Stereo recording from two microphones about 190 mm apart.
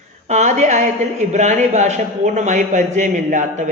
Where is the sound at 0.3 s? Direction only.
35° right (ahead or behind).